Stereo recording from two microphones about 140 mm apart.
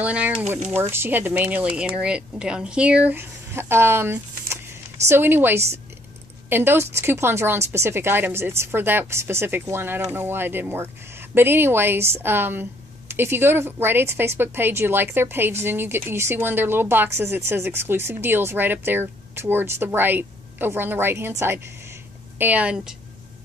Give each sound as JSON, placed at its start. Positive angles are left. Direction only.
{"t": 0.0, "sound": "speech", "side_deg": -10}